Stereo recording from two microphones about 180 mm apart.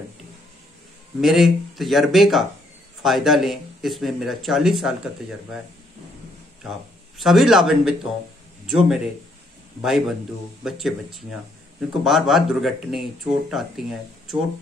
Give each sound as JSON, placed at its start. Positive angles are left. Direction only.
{"t": 1.2, "sound": "speech", "side_deg": 0}
{"t": 7.2, "sound": "a man's voice", "side_deg": 0}